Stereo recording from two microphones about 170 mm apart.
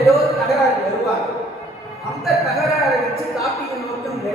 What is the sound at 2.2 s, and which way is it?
A man's voice, centre (ahead or behind).